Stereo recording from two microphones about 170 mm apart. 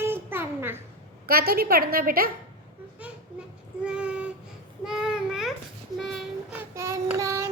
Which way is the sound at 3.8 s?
5° right (ahead or behind).